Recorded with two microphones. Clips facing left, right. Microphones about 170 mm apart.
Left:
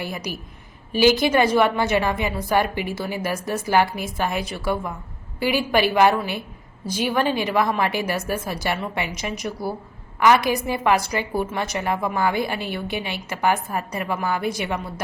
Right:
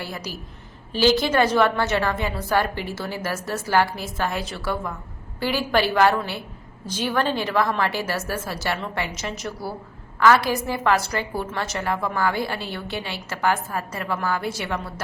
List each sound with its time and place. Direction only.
0.0 s a woman's voice: 15° left (ahead or behind)